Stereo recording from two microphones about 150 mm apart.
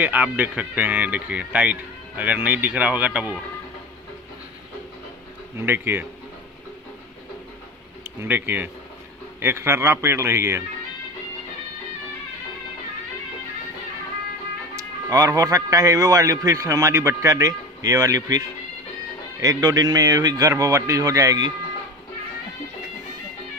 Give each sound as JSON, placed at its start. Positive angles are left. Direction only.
{"t": 0.0, "sound": "speech", "side_deg": -10}
{"t": 5.6, "sound": "speech", "side_deg": -15}
{"t": 8.2, "sound": "speech", "side_deg": -15}
{"t": 14.8, "sound": "a man's voice", "side_deg": -25}
{"t": 19.4, "sound": "a man's voice", "side_deg": -25}